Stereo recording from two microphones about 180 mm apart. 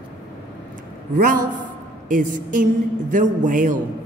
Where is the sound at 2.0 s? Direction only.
45° right (ahead or behind).